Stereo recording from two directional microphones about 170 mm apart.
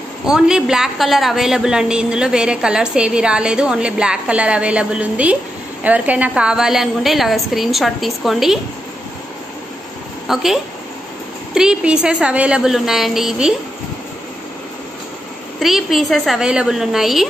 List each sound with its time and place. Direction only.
0.3 s a woman's voice: 5° right (ahead or behind)
10.2 s a woman's voice: centre (ahead or behind)
15.6 s a woman's voice: centre (ahead or behind)